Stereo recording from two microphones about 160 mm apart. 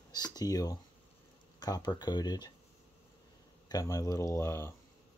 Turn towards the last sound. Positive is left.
turn(degrees=15)  # may be behind; listen again after turning